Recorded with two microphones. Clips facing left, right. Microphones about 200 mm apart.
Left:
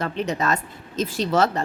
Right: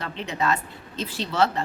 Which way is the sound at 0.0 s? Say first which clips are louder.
Left 3 dB; 45° left (ahead or behind).